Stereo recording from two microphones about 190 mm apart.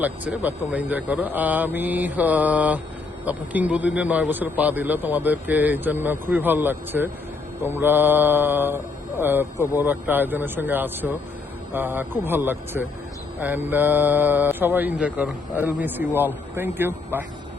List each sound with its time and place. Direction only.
0.0 s a man's voice: 10° right (ahead or behind)